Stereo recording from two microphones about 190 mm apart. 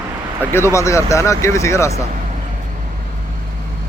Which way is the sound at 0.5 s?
15° left (ahead or behind).